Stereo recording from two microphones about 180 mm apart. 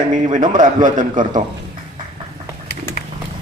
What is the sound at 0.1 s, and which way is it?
Speech, 45° right (ahead or behind).